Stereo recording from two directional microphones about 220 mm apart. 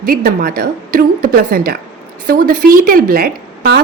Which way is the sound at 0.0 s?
40° right (ahead or behind).